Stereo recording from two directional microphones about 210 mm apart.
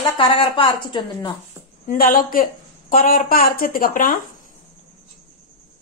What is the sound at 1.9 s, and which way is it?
Speech, 40° left (ahead or behind).